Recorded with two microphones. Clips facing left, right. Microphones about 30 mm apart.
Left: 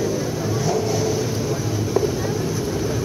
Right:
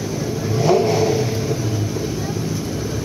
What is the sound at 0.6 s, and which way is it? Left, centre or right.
Vehicle, right.